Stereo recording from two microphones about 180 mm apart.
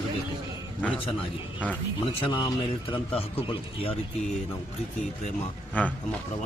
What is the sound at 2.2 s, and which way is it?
A man's voice, 25° left (ahead or behind).